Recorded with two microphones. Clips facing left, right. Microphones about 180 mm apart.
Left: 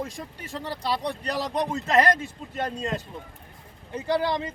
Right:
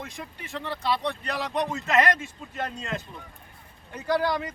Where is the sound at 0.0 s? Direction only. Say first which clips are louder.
Left 4 dB; 35° left (ahead or behind).